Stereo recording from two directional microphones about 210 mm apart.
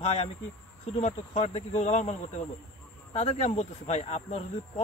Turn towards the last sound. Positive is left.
turn(degrees=30)  # may be behind; listen again after turning